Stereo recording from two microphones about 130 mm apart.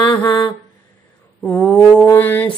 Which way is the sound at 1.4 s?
10° left (ahead or behind).